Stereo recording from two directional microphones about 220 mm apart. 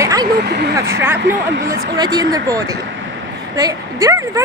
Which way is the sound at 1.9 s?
20° right (ahead or behind).